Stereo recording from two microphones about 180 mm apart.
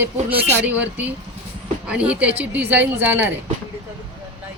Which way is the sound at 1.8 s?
5° right (ahead or behind).